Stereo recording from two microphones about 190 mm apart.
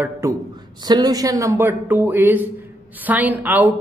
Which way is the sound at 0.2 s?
15° right (ahead or behind).